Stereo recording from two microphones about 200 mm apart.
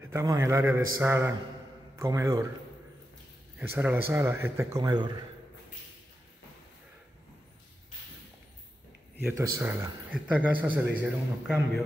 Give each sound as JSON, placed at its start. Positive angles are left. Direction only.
{"t": 0.0, "sound": "speech", "side_deg": -15}
{"t": 3.5, "sound": "speech", "side_deg": -10}
{"t": 9.2, "sound": "speech", "side_deg": -15}